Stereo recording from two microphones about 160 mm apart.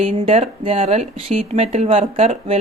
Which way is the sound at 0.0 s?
40° right (ahead or behind).